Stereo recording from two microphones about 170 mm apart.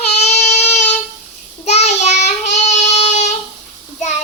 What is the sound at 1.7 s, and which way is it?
Child singing, 40° left (ahead or behind).